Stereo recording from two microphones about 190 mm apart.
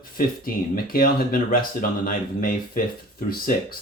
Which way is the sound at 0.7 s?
50° left (ahead or behind).